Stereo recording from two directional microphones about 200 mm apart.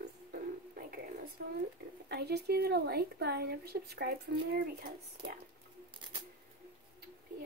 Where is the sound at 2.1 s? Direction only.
55° right (ahead or behind).